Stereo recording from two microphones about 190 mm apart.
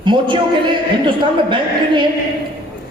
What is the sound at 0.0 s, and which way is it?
A man's voice, 25° right (ahead or behind).